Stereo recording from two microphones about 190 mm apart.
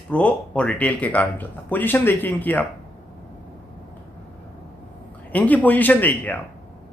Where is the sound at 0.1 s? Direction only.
5° left (ahead or behind).